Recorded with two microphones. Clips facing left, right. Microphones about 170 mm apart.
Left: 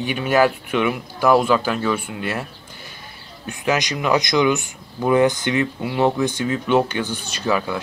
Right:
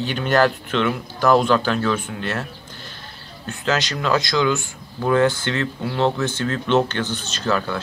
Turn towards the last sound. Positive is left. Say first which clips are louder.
# left 1 dB
turn(degrees=10)  # may be behind; listen again after turning